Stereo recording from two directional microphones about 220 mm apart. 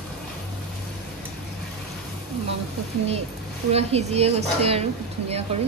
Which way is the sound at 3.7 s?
30° right (ahead or behind).